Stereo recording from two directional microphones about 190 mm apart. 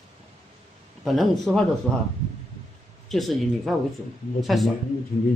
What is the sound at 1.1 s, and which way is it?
Speech, centre (ahead or behind).